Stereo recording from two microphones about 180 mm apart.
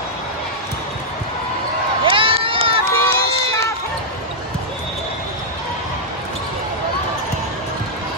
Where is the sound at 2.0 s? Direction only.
30° right (ahead or behind).